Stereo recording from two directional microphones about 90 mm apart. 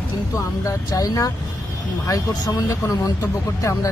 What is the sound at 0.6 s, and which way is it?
Speech, 40° left (ahead or behind).